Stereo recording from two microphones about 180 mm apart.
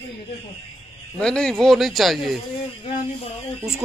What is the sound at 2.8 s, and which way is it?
Speech, 30° left (ahead or behind).